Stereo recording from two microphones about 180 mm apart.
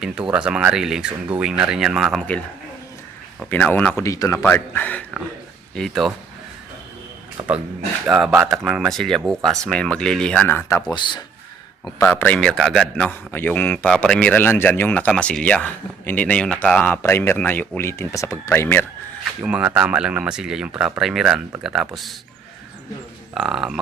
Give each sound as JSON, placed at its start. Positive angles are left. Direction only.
{"t": 0.0, "sound": "speech", "side_deg": -5}
{"t": 3.4, "sound": "a man's voice", "side_deg": 10}
{"t": 7.4, "sound": "speech", "side_deg": -20}
{"t": 8.0, "sound": "speech", "side_deg": -5}
{"t": 10.9, "sound": "speech", "side_deg": 25}
{"t": 11.9, "sound": "a man's voice", "side_deg": 10}
{"t": 19.4, "sound": "speech", "side_deg": -5}
{"t": 23.3, "sound": "speech", "side_deg": 0}